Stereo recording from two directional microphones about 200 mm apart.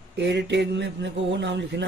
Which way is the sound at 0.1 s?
60° right (ahead or behind).